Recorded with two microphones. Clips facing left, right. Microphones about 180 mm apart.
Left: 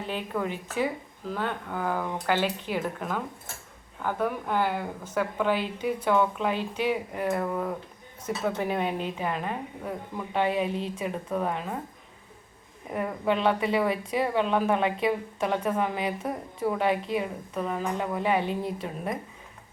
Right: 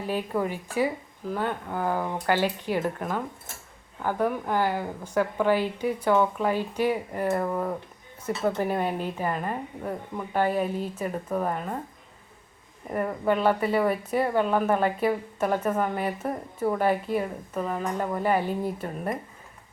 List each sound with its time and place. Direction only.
0.0 s a woman's voice: 10° right (ahead or behind)
12.9 s speech: centre (ahead or behind)